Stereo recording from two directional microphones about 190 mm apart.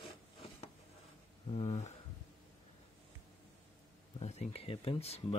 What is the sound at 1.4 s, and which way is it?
Speech, 35° left (ahead or behind).